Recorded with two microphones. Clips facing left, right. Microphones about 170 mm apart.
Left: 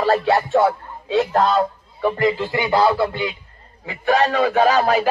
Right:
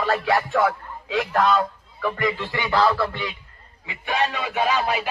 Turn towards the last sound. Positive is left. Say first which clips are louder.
# left 7 dB
turn(degrees=40)  # may be behind; listen again after turning